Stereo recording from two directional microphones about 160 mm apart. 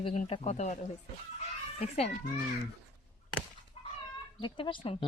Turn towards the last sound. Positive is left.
turn(degrees=30)  # may be behind; listen again after turning